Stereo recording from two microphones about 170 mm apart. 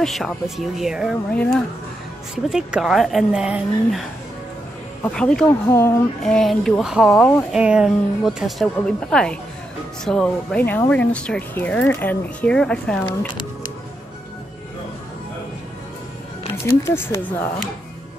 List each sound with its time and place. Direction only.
0.0 s speech: centre (ahead or behind)
1.3 s speech: 10° left (ahead or behind)
2.3 s speech: 5° right (ahead or behind)
5.0 s speech: 5° left (ahead or behind)
5.7 s speech: 15° left (ahead or behind)
6.2 s speech: centre (ahead or behind)
16.8 s speech: 15° left (ahead or behind)